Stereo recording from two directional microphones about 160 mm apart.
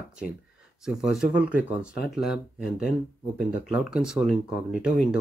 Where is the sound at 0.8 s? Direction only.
5° right (ahead or behind).